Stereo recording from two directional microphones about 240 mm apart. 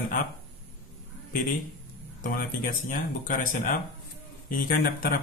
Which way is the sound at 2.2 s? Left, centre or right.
Left.